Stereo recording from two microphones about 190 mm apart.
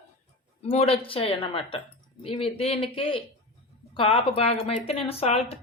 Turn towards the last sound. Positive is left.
turn(degrees=30)  # may be behind; listen again after turning